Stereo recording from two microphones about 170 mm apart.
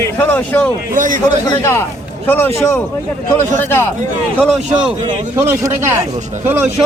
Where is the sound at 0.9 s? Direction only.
50° right (ahead or behind).